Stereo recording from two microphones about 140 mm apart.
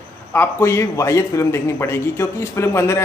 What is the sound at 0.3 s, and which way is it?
A man's voice, 15° left (ahead or behind).